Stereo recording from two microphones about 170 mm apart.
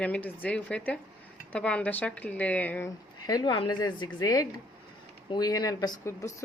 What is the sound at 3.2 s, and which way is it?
Speech, 25° left (ahead or behind).